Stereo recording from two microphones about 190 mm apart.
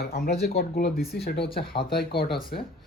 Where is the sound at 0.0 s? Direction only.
55° left (ahead or behind).